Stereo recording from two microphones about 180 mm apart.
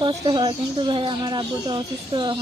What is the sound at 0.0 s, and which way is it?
Speech, 25° right (ahead or behind).